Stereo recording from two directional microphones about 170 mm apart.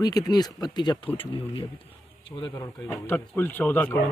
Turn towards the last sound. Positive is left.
turn(degrees=10)  # may be behind; listen again after turning